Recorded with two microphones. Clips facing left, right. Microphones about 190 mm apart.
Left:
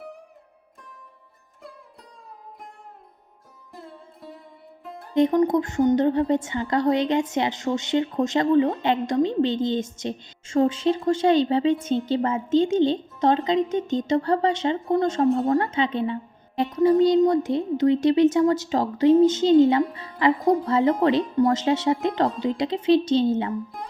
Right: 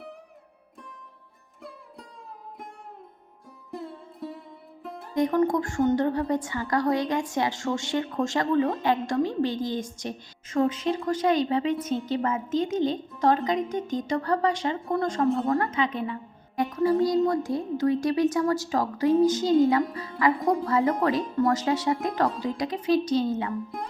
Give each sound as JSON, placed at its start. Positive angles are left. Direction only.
{"t": 3.7, "sound": "music", "side_deg": 0}
{"t": 5.1, "sound": "a woman's voice", "side_deg": 20}
{"t": 20.4, "sound": "speech", "side_deg": 0}
{"t": 20.7, "sound": "a woman's voice", "side_deg": 25}